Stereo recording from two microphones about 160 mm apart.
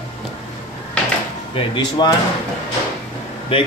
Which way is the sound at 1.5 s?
30° left (ahead or behind).